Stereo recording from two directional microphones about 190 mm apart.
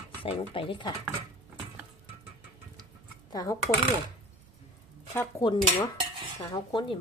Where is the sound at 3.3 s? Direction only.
20° left (ahead or behind).